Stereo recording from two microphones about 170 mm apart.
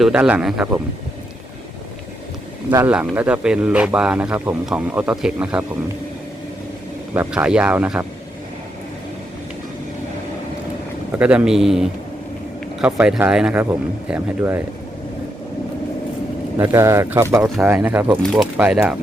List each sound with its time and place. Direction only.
0.0 s speech: 5° right (ahead or behind)
2.6 s speech: 10° right (ahead or behind)
7.1 s speech: 10° right (ahead or behind)
11.2 s a man's voice: 5° right (ahead or behind)
16.6 s speech: 15° right (ahead or behind)
18.2 s a man's voice: 5° left (ahead or behind)